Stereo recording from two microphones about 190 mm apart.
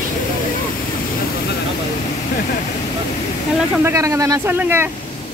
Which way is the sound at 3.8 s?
15° right (ahead or behind).